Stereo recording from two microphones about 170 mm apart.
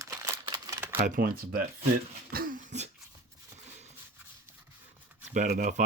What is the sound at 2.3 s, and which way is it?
Cough, 55° right (ahead or behind).